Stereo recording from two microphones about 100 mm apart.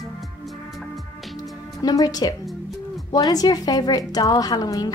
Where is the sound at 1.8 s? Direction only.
40° left (ahead or behind).